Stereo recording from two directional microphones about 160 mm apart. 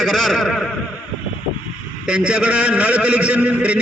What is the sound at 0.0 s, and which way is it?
Speech, centre (ahead or behind).